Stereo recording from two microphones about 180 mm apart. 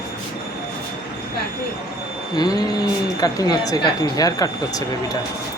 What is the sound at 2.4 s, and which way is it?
Speech, 20° left (ahead or behind).